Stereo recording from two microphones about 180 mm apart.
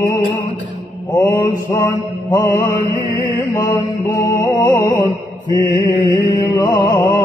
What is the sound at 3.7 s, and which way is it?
Mantra, 15° left (ahead or behind).